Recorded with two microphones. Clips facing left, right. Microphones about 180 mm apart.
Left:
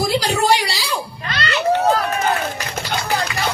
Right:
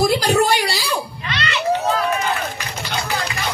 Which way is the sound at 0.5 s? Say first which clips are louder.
Left 1 dB; 50° right (ahead or behind).